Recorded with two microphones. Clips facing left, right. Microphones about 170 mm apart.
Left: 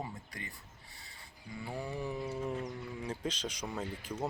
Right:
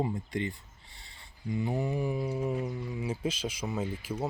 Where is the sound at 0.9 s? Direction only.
25° right (ahead or behind).